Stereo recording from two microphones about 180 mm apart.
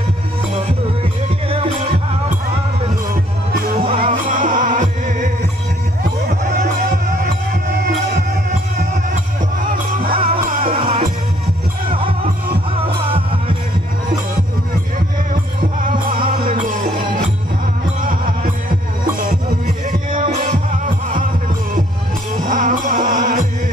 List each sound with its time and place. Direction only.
1.5 s music: 30° right (ahead or behind)
3.8 s music: 30° right (ahead or behind)
4.3 s music: 50° right (ahead or behind)
10.1 s music: 30° right (ahead or behind)
15.8 s music: 50° right (ahead or behind)
19.6 s music: 50° right (ahead or behind)
22.3 s music: 45° right (ahead or behind)